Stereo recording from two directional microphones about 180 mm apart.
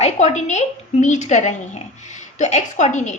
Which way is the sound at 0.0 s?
40° left (ahead or behind).